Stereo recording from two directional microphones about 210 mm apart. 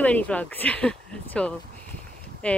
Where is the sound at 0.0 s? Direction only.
5° left (ahead or behind).